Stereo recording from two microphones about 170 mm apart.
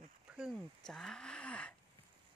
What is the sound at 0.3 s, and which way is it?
Speech, 5° right (ahead or behind).